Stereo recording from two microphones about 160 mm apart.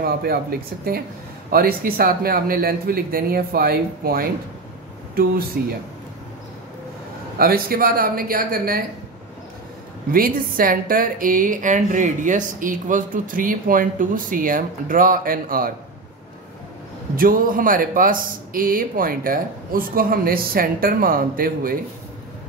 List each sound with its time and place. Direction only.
0.0 s speech: 70° right (ahead or behind)
7.3 s a woman's voice: 70° right (ahead or behind)
10.1 s a woman's voice: 65° right (ahead or behind)
17.1 s a woman's voice: 60° right (ahead or behind)